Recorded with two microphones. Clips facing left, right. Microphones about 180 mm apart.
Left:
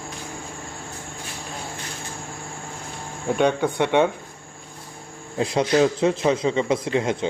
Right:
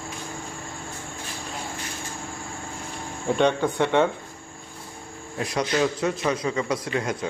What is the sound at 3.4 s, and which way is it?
Speech, 10° left (ahead or behind).